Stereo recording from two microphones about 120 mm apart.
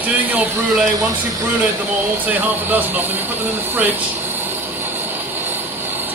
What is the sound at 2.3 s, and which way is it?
Speech, 15° right (ahead or behind).